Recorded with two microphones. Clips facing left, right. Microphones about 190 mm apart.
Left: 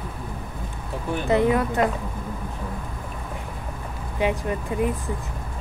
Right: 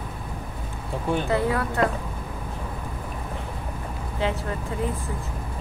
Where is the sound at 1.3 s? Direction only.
20° left (ahead or behind).